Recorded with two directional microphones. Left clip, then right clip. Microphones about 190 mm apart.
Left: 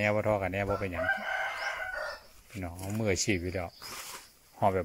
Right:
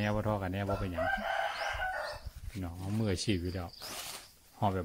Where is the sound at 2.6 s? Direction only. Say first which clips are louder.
Left 4 dB; 20° left (ahead or behind).